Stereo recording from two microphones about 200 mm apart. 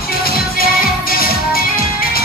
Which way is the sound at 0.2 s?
45° left (ahead or behind).